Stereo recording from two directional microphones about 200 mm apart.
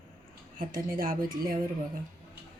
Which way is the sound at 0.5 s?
45° right (ahead or behind).